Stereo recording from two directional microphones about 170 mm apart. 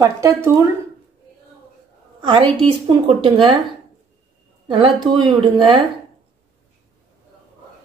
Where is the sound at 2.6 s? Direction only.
30° right (ahead or behind).